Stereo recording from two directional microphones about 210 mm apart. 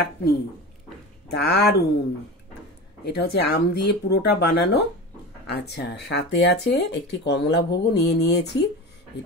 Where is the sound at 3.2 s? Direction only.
50° left (ahead or behind).